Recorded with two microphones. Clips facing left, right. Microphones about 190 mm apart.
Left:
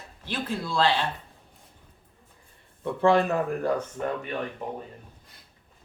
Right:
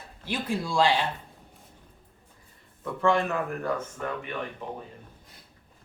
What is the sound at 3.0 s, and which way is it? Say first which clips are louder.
Speech: left 3 dB; 35° left (ahead or behind).